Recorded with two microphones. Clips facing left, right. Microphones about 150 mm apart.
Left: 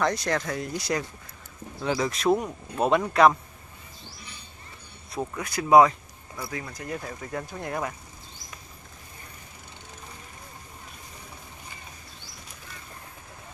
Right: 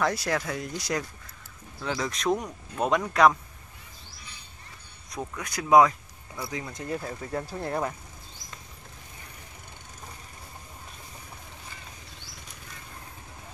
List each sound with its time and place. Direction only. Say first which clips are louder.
0.0 s speech: left 1 dB; 5° right (ahead or behind)
5.4 s speech: left 2 dB; 5° left (ahead or behind)
6.5 s speech: right 2 dB; 20° right (ahead or behind)